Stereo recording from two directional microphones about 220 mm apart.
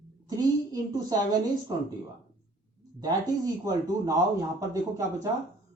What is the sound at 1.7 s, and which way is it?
Speech, 20° right (ahead or behind).